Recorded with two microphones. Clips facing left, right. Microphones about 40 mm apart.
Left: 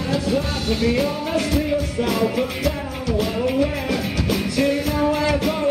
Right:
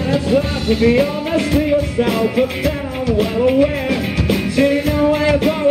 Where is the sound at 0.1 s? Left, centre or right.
Centre.